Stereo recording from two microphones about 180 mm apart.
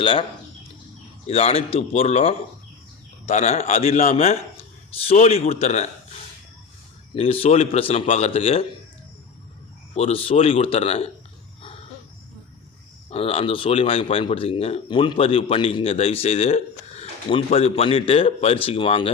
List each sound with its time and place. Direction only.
0.0 s speech: 30° left (ahead or behind)
1.3 s speech: 35° left (ahead or behind)
7.1 s speech: 30° left (ahead or behind)
9.9 s speech: 35° left (ahead or behind)
13.1 s speech: 30° left (ahead or behind)